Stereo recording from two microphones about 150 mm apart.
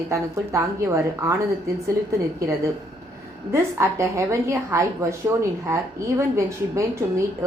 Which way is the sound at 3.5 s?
20° right (ahead or behind).